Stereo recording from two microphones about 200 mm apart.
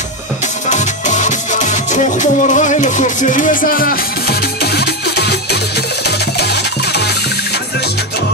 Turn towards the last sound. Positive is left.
turn(degrees=55)  # may be behind; listen again after turning